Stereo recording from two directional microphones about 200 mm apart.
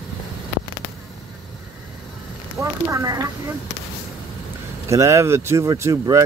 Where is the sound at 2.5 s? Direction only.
15° right (ahead or behind).